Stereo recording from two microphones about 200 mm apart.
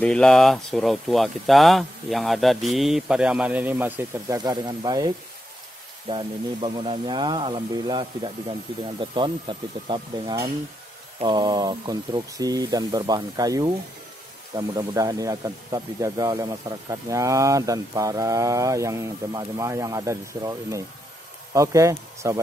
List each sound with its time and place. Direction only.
0.0 s speech: 5° left (ahead or behind); by 22.4 s 15° right (ahead or behind)